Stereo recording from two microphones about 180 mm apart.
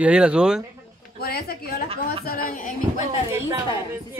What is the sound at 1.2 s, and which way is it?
A woman's voice, 55° left (ahead or behind).